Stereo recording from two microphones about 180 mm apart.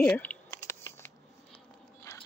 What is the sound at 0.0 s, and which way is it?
Speech, 5° left (ahead or behind).